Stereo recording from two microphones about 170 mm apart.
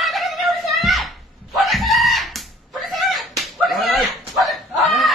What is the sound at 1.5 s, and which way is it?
Chicken, centre (ahead or behind).